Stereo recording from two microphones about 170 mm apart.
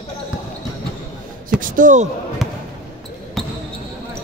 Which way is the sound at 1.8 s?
45° right (ahead or behind).